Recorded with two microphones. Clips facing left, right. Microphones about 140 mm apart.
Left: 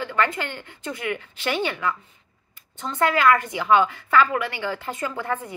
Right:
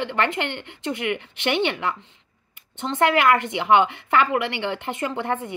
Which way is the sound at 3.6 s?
20° right (ahead or behind).